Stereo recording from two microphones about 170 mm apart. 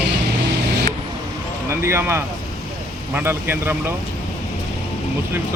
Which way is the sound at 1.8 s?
15° right (ahead or behind).